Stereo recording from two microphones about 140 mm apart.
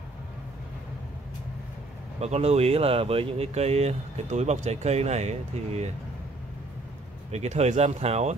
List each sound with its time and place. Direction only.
2.1 s speech: 50° right (ahead or behind)
7.2 s speech: 50° right (ahead or behind)